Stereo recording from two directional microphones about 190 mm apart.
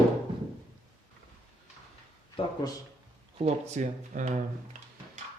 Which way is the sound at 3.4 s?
40° right (ahead or behind).